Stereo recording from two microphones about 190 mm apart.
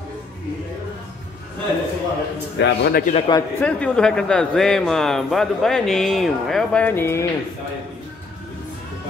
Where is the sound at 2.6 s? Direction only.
60° left (ahead or behind).